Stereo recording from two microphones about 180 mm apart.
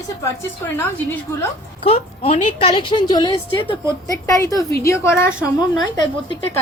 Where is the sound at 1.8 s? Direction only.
35° left (ahead or behind).